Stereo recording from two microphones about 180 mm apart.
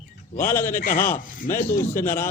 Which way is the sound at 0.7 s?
50° left (ahead or behind).